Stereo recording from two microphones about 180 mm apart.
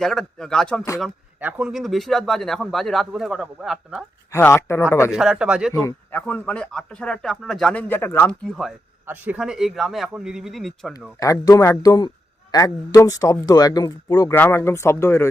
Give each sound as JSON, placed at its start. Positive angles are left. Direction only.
{"t": 0.0, "sound": "speech", "side_deg": 5}
{"t": 4.3, "sound": "speech", "side_deg": 15}
{"t": 5.1, "sound": "speech", "side_deg": -5}
{"t": 5.7, "sound": "speech", "side_deg": 15}
{"t": 9.0, "sound": "speech", "side_deg": -10}
{"t": 11.2, "sound": "a man's voice", "side_deg": 20}